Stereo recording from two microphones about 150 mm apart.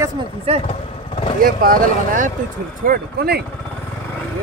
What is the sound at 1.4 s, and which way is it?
Speech, 70° right (ahead or behind).